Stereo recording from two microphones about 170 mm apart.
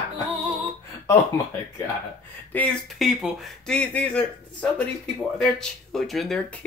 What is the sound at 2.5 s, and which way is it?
Speech, 5° left (ahead or behind).